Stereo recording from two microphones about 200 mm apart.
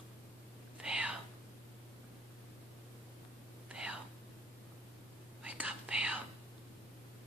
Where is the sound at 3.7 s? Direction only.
5° right (ahead or behind).